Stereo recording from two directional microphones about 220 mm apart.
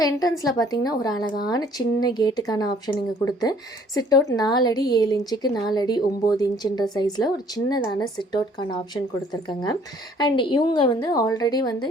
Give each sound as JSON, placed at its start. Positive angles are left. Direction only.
{"t": 0.0, "sound": "a woman's voice", "side_deg": 15}
{"t": 3.9, "sound": "a woman's voice", "side_deg": 15}